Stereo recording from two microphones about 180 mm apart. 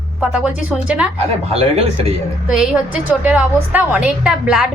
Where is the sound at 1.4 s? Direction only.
35° right (ahead or behind).